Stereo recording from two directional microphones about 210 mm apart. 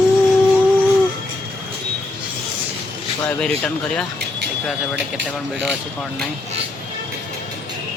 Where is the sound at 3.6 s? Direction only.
5° left (ahead or behind).